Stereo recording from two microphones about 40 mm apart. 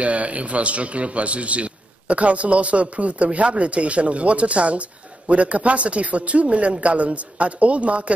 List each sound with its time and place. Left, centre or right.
0.0 s a man's voice: right